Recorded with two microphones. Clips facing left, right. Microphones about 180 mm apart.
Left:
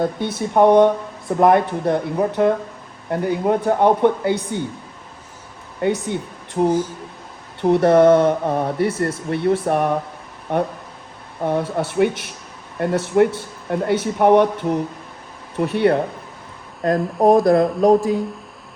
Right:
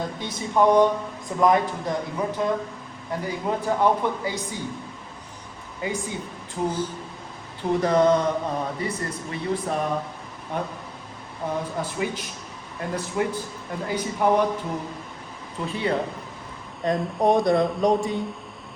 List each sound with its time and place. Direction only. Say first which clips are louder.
0.3 s speech: left 5 dB; 60° left (ahead or behind)
5.8 s speech: left 8 dB; 70° left (ahead or behind)
11.4 s speech: left 7 dB; 70° left (ahead or behind)
16.8 s speech: left 6 dB; centre (ahead or behind)